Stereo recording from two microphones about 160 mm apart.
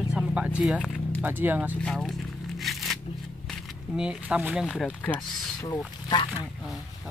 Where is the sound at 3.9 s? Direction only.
5° right (ahead or behind).